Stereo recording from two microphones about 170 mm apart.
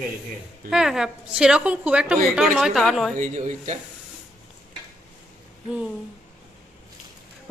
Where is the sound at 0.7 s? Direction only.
5° right (ahead or behind).